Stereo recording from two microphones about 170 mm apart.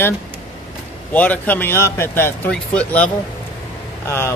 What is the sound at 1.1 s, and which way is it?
Speech, 10° left (ahead or behind).